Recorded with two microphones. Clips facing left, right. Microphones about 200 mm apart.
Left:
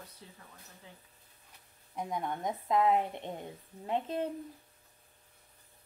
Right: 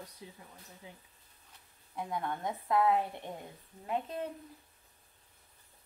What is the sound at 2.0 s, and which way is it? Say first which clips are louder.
A woman's voice: left 1 dB; 20° left (ahead or behind).